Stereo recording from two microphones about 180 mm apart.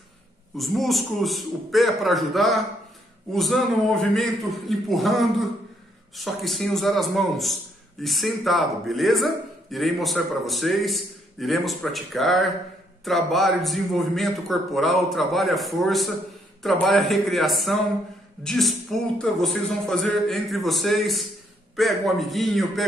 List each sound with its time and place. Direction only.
0.6 s a man's voice: centre (ahead or behind)